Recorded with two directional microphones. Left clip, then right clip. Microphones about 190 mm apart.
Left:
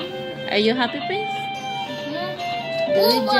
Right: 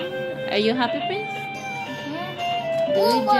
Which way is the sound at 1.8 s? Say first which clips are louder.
Left 2 dB; 20° right (ahead or behind).